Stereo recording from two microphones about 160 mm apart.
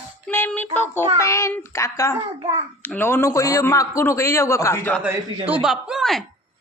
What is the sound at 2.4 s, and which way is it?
Speech, 40° right (ahead or behind).